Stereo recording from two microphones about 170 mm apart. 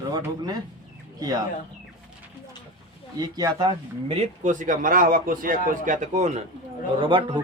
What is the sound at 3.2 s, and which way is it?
Speech, 25° right (ahead or behind).